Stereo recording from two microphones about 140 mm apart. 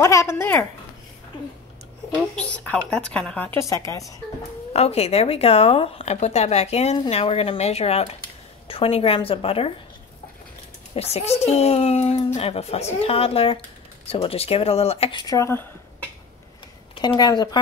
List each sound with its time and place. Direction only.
0.0 s speech: 20° left (ahead or behind)
2.3 s a woman's voice: 10° left (ahead or behind)
3.6 s speech: 25° left (ahead or behind)
4.7 s a woman's voice: 45° left (ahead or behind)
11.0 s speech: 50° left (ahead or behind); by 15.6 s 20° left (ahead or behind)
16.9 s speech: 30° left (ahead or behind)